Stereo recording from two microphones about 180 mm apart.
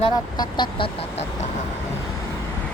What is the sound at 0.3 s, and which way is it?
Speech, 25° left (ahead or behind).